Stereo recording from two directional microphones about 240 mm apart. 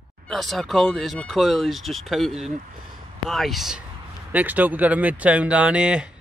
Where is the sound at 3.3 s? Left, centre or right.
Centre.